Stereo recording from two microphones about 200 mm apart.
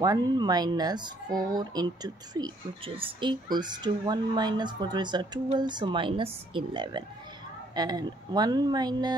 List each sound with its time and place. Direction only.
0.0 s speech: 20° right (ahead or behind)